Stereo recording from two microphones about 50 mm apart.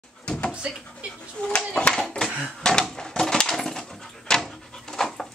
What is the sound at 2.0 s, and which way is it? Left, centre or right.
Speech, centre.